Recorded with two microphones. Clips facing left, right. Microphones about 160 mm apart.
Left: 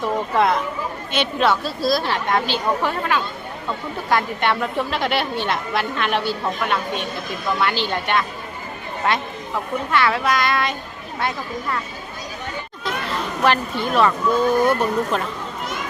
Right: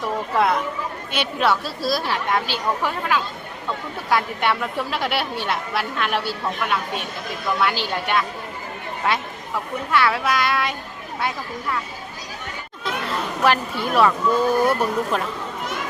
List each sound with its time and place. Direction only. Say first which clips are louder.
0.3 s a woman's voice: even; 5° right (ahead or behind)
9.9 s a woman's voice: even; 5° right (ahead or behind)
12.8 s speech: even; centre (ahead or behind)